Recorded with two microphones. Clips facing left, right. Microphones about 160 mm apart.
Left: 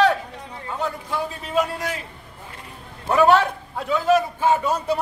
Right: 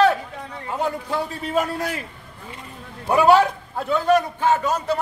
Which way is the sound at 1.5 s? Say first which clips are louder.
Even; 50° right (ahead or behind).